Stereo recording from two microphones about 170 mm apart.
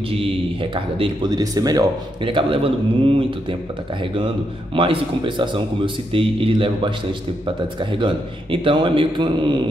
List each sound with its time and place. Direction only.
0.1 s speech: 30° right (ahead or behind)
4.7 s speech: 30° right (ahead or behind)